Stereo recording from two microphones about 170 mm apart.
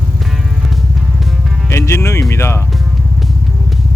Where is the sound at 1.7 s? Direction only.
15° left (ahead or behind).